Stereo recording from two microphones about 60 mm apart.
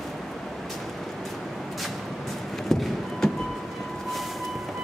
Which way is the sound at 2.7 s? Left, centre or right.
Centre.